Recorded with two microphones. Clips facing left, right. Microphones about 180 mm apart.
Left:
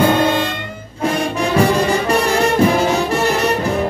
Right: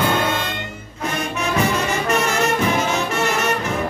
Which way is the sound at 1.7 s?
35° left (ahead or behind).